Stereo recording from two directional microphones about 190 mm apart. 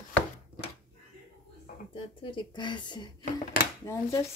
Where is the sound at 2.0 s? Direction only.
25° left (ahead or behind).